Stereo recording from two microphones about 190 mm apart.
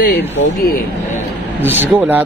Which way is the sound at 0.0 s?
55° left (ahead or behind).